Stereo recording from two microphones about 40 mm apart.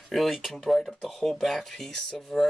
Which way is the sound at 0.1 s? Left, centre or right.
Centre.